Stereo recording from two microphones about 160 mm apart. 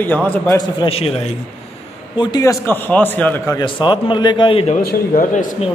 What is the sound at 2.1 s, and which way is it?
Speech, 25° left (ahead or behind).